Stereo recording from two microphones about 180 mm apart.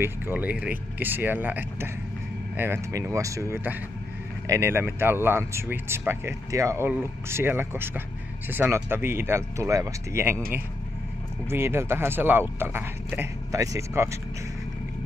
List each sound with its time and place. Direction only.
0.0 s speech: 10° right (ahead or behind)
11.4 s speech: 15° right (ahead or behind)